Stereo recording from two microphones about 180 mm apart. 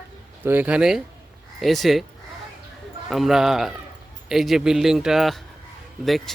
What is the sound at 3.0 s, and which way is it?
Speech, centre (ahead or behind).